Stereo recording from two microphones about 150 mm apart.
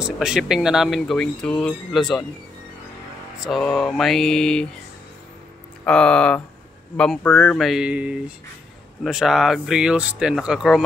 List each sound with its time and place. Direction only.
0.0 s speech: 5° right (ahead or behind)
3.3 s speech: centre (ahead or behind)
5.9 s speech: 5° left (ahead or behind)